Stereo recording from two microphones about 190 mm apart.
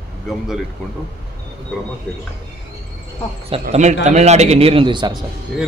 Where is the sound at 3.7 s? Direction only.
40° right (ahead or behind).